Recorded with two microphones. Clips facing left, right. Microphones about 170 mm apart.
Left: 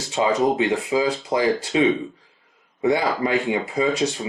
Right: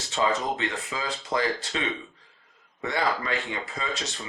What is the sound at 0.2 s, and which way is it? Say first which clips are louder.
Speech: left 7 dB; 30° left (ahead or behind).